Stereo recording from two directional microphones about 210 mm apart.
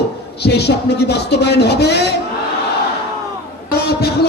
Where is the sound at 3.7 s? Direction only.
50° left (ahead or behind).